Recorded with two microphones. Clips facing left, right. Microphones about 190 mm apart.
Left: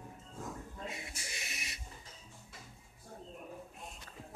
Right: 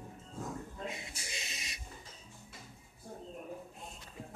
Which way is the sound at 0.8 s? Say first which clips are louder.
Right 2 dB; 20° right (ahead or behind).